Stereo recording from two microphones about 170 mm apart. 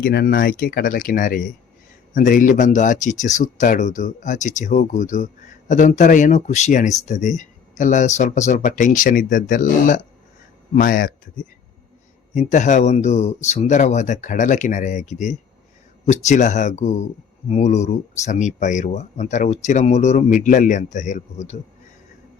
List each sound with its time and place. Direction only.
0.0 s speech: 65° left (ahead or behind)
12.3 s speech: 45° left (ahead or behind)